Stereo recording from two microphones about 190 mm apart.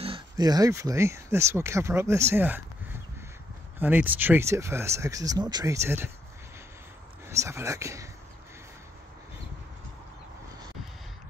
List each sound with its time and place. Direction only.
0.0 s speech: 25° right (ahead or behind)
3.8 s speech: 10° right (ahead or behind)
7.2 s speech: 15° right (ahead or behind)